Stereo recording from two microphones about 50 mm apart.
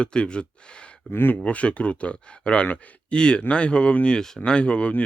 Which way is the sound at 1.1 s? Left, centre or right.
Left.